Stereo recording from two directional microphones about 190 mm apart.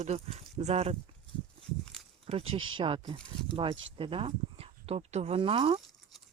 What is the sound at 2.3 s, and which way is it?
Speech, 30° right (ahead or behind).